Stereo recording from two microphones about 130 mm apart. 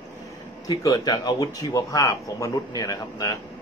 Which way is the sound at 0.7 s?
25° left (ahead or behind).